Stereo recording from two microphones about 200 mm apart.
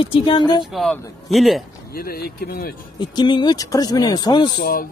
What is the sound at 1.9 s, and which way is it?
Speech, 50° left (ahead or behind).